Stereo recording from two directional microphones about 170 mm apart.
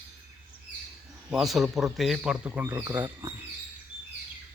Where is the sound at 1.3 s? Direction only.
Centre (ahead or behind).